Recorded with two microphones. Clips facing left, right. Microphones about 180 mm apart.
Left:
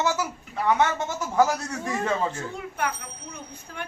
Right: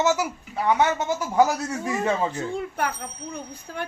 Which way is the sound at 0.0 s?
15° right (ahead or behind).